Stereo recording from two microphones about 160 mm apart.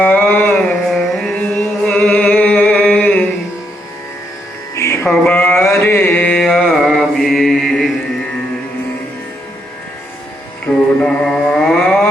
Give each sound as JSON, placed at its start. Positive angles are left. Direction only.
{"t": 0.0, "sound": "a sound", "side_deg": 10}
{"t": 0.9, "sound": "carnatic music", "side_deg": 0}
{"t": 1.8, "sound": "music", "side_deg": 5}
{"t": 4.7, "sound": "music", "side_deg": 20}
{"t": 5.0, "sound": "mantra", "side_deg": 5}
{"t": 10.7, "sound": "mantra", "side_deg": 5}